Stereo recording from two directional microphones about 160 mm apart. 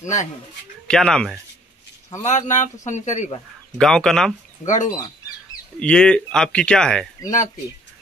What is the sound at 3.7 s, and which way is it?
Speech, 5° left (ahead or behind).